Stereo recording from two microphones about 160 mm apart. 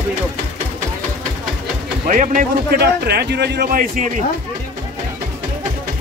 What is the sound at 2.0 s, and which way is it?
A man's voice, 55° right (ahead or behind).